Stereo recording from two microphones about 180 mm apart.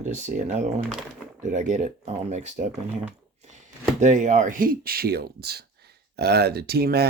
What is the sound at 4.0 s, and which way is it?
Speech, 40° right (ahead or behind).